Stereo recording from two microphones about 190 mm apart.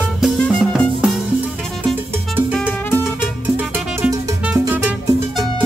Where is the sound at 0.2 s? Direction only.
5° left (ahead or behind).